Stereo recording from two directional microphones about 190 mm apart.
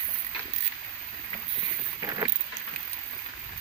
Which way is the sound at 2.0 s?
20° right (ahead or behind).